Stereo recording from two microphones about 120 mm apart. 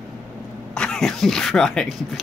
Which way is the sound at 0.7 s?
5° left (ahead or behind).